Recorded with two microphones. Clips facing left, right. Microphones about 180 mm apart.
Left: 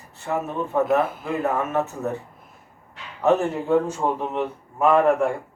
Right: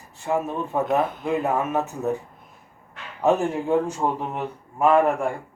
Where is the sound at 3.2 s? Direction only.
10° right (ahead or behind).